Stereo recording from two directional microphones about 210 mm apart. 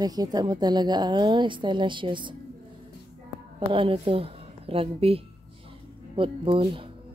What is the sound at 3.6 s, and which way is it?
A woman's voice, 25° right (ahead or behind).